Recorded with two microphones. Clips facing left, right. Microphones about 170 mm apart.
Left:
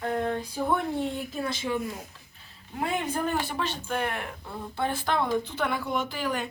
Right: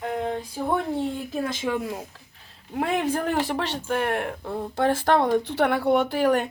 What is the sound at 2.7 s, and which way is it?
Speech, 75° right (ahead or behind).